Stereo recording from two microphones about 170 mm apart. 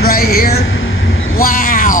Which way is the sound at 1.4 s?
60° left (ahead or behind).